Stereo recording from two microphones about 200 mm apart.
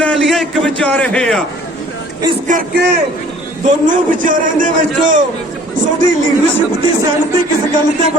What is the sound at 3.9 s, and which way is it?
Speech, 40° right (ahead or behind).